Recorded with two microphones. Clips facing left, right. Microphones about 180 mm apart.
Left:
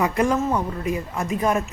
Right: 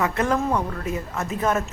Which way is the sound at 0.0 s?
10° left (ahead or behind).